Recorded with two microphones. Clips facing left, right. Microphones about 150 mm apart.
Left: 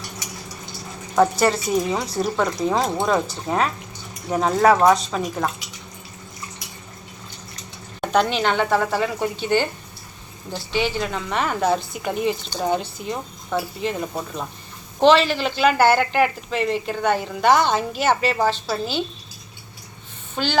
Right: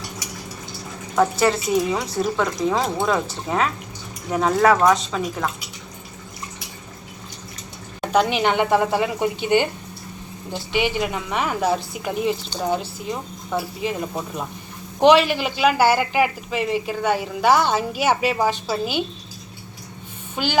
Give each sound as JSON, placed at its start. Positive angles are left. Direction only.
{"t": 1.2, "sound": "speech", "side_deg": 0}
{"t": 8.0, "sound": "speech", "side_deg": -5}
{"t": 20.3, "sound": "speech", "side_deg": -10}